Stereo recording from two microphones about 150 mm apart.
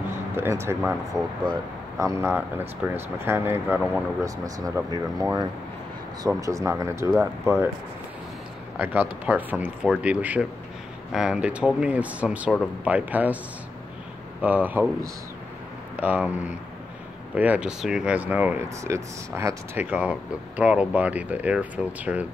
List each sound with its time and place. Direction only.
0.4 s speech: 15° right (ahead or behind)
8.7 s speech: 10° right (ahead or behind)
14.4 s speech: 10° right (ahead or behind)
16.0 s speech: 10° right (ahead or behind)